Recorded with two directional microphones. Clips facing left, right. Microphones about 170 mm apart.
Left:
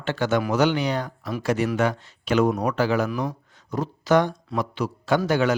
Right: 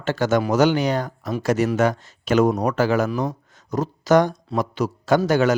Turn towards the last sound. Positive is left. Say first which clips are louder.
# right 3 dB
turn(degrees=-45)  # may be behind; listen again after turning